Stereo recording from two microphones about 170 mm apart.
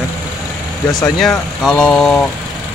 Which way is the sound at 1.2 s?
5° left (ahead or behind).